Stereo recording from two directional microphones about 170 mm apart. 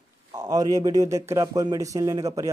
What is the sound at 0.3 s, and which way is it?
Speech, 20° right (ahead or behind).